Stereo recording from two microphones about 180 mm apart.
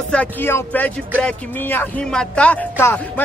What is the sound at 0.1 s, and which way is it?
Speech, 10° left (ahead or behind).